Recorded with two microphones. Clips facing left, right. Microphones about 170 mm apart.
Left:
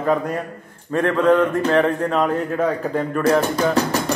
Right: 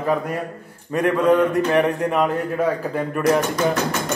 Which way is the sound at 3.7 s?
35° left (ahead or behind).